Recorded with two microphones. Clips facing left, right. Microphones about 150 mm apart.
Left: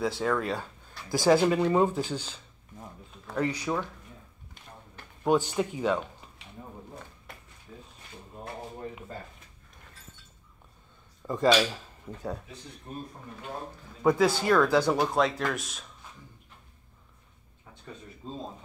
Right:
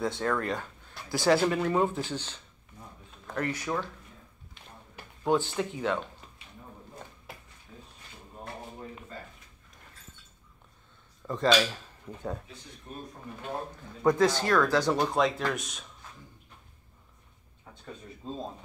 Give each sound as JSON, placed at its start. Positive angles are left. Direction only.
{"t": 0.0, "sound": "speech", "side_deg": 5}
{"t": 5.2, "sound": "speech", "side_deg": 15}
{"t": 11.2, "sound": "speech", "side_deg": 10}
{"t": 12.9, "sound": "speech", "side_deg": 40}
{"t": 14.0, "sound": "speech", "side_deg": 5}